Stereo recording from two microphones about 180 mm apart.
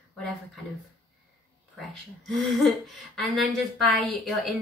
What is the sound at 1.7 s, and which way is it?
A woman's voice, centre (ahead or behind).